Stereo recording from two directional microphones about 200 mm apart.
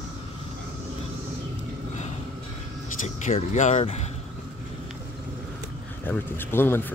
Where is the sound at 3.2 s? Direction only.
35° left (ahead or behind).